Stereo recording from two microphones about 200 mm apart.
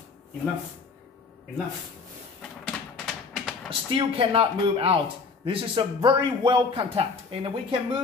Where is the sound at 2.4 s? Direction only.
5° left (ahead or behind).